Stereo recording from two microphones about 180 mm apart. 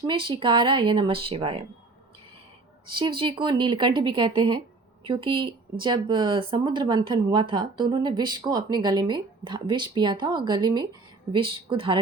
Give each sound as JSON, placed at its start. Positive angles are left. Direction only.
{"t": 0.0, "sound": "speech", "side_deg": -25}
{"t": 2.8, "sound": "speech", "side_deg": -25}